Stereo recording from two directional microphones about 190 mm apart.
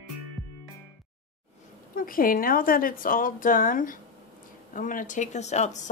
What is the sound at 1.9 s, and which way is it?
A woman's voice, 50° left (ahead or behind).